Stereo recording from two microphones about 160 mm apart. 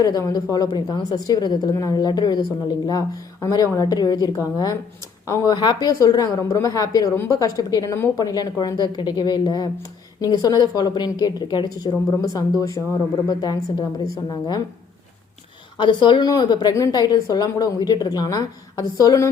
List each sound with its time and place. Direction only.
0.0 s a woman's voice: 20° left (ahead or behind)
15.8 s a woman's voice: 30° left (ahead or behind)